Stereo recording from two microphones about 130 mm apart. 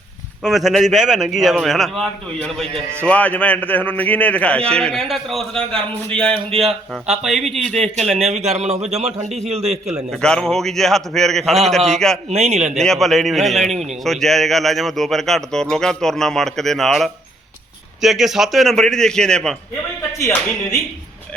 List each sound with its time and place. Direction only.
0.4 s a man's voice: centre (ahead or behind)
8.2 s speech: 55° right (ahead or behind)
10.1 s a man's voice: 5° left (ahead or behind)
12.3 s speech: 55° right (ahead or behind)
12.7 s a man's voice: 5° left (ahead or behind)